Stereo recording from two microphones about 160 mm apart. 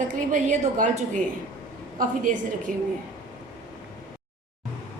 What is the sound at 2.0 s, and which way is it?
Speech, 55° right (ahead or behind).